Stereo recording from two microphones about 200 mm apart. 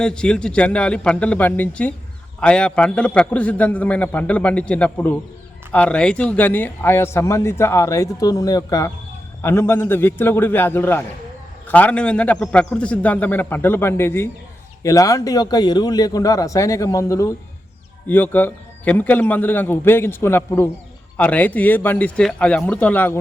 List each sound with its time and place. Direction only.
0.0 s a man's voice: 5° left (ahead or behind)